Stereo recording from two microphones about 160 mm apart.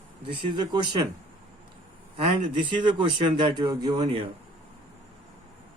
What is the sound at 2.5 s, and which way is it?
Speech, 30° right (ahead or behind).